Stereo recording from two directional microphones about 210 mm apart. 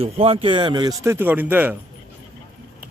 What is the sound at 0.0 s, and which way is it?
Speech, 25° right (ahead or behind).